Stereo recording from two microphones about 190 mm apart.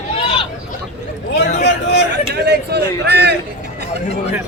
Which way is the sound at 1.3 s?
60° left (ahead or behind).